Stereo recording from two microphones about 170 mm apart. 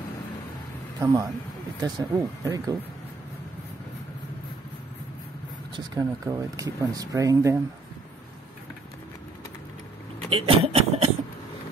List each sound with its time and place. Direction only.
1.0 s speech: 15° right (ahead or behind)
5.8 s speech: 20° right (ahead or behind)
10.3 s speech: 35° right (ahead or behind)